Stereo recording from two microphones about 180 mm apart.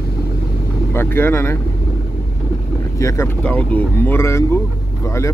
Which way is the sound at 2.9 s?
15° left (ahead or behind).